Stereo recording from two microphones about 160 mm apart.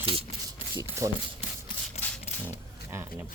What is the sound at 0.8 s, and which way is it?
Speech, 15° right (ahead or behind).